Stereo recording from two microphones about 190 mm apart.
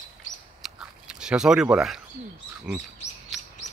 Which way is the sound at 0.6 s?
Centre (ahead or behind).